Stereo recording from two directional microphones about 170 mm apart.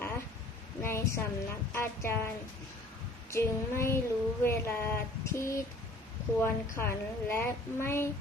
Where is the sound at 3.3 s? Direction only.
15° left (ahead or behind).